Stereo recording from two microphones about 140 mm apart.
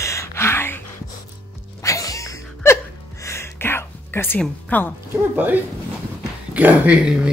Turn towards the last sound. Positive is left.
turn(degrees=-5)  # may be behind; listen again after turning